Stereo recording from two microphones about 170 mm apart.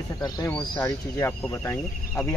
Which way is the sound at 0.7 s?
15° left (ahead or behind).